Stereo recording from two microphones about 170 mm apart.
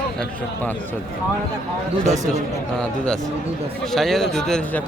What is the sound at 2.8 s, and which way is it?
A man's voice, 5° left (ahead or behind).